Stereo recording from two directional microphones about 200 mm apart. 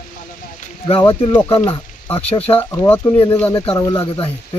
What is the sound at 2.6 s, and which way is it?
Speech, 10° left (ahead or behind).